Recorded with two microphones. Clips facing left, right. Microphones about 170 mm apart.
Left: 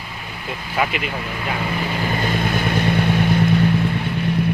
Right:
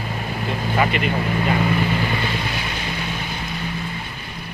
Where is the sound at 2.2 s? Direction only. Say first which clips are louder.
Left 5 dB; 50° left (ahead or behind).